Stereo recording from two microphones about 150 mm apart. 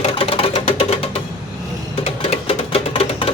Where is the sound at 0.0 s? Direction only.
40° left (ahead or behind).